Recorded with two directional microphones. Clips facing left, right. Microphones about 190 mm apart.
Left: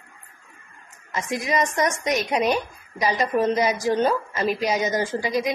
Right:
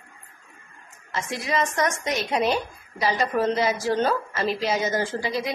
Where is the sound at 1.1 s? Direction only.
15° left (ahead or behind).